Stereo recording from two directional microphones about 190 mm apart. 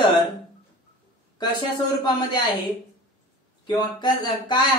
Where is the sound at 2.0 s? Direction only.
20° left (ahead or behind).